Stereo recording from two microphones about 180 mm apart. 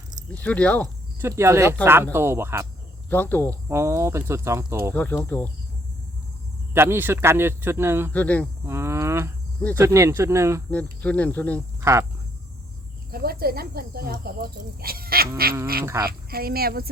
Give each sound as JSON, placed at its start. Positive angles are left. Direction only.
{"t": 0.3, "sound": "speech", "side_deg": 5}
{"t": 1.2, "sound": "speech", "side_deg": -15}
{"t": 3.1, "sound": "speech", "side_deg": 10}
{"t": 3.5, "sound": "speech", "side_deg": -15}
{"t": 4.9, "sound": "speech", "side_deg": 10}
{"t": 6.7, "sound": "speech", "side_deg": -15}
{"t": 8.1, "sound": "speech", "side_deg": 10}
{"t": 8.6, "sound": "cricket", "side_deg": -15}
{"t": 9.7, "sound": "speech", "side_deg": -15}
{"t": 11.0, "sound": "speech", "side_deg": 10}
{"t": 11.8, "sound": "speech", "side_deg": -15}
{"t": 13.1, "sound": "speech", "side_deg": -55}